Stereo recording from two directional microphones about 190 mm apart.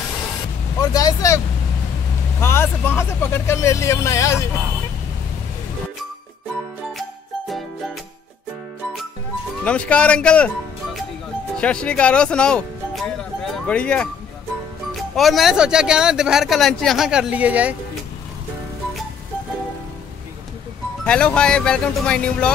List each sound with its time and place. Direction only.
0.9 s speech: 15° left (ahead or behind)
2.4 s speech: 10° left (ahead or behind)
7.0 s music: centre (ahead or behind)
9.7 s speech: 5° left (ahead or behind)
15.1 s speech: centre (ahead or behind)
21.0 s speech: 5° left (ahead or behind)